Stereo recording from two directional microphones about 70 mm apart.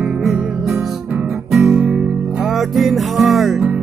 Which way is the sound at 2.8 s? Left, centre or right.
Centre.